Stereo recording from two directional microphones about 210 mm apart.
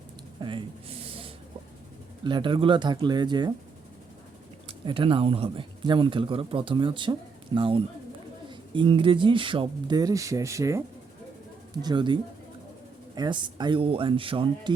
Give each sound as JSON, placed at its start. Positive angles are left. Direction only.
{"t": 0.3, "sound": "a sound", "side_deg": -25}
{"t": 2.2, "sound": "speech", "side_deg": -20}
{"t": 4.9, "sound": "speech", "side_deg": -25}